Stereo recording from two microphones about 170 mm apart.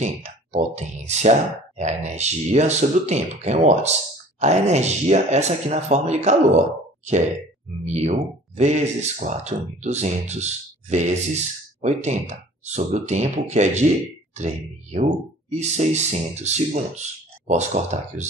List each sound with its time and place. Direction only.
0.0 s speech: 45° right (ahead or behind)
7.8 s speech: 45° right (ahead or behind)